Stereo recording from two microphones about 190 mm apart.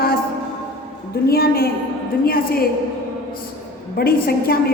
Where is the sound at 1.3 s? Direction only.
50° left (ahead or behind).